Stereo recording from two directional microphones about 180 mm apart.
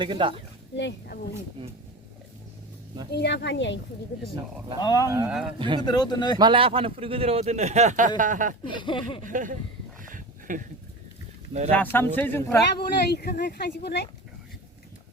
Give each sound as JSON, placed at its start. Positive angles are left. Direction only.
{"t": 0.0, "sound": "speech", "side_deg": -25}
{"t": 0.8, "sound": "a woman's voice", "side_deg": 65}
{"t": 3.1, "sound": "a woman's voice", "side_deg": 65}
{"t": 4.8, "sound": "speech", "side_deg": 20}
{"t": 5.0, "sound": "speech", "side_deg": -15}
{"t": 5.5, "sound": "speech", "side_deg": -25}
{"t": 5.8, "sound": "speech", "side_deg": 25}
{"t": 6.4, "sound": "speech", "side_deg": -30}
{"t": 8.7, "sound": "speech", "side_deg": 25}
{"t": 9.2, "sound": "a sound", "side_deg": -45}
{"t": 11.7, "sound": "a man's voice", "side_deg": 10}
{"t": 12.7, "sound": "speech", "side_deg": 60}